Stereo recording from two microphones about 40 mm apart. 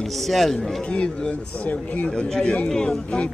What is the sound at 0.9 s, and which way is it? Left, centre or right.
Speech, left.